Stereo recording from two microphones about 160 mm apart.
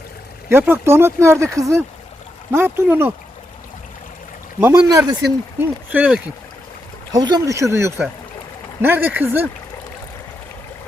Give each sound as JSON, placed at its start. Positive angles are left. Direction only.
{"t": 0.5, "sound": "speech", "side_deg": -15}
{"t": 4.6, "sound": "speech", "side_deg": -15}
{"t": 7.1, "sound": "speech", "side_deg": -25}